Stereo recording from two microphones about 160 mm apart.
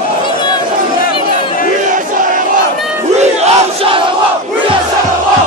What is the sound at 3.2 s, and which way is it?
Crowd, 40° right (ahead or behind).